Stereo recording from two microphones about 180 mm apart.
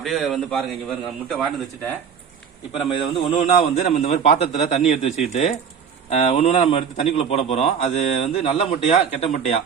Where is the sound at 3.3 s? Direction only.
40° left (ahead or behind).